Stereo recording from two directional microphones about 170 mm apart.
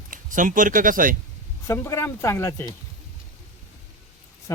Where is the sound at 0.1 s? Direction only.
50° right (ahead or behind).